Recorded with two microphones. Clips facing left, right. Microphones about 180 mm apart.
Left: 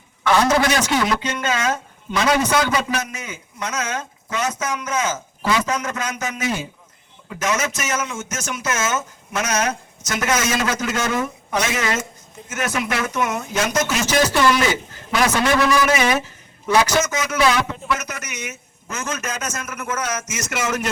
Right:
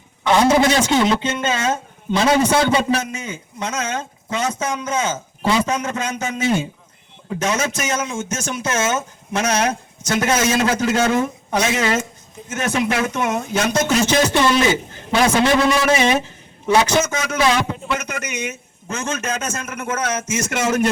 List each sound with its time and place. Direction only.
0.3 s speech: 20° right (ahead or behind)